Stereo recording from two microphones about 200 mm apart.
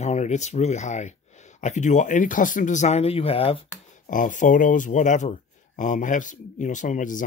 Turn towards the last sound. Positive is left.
turn(degrees=40)  # may be behind; listen again after turning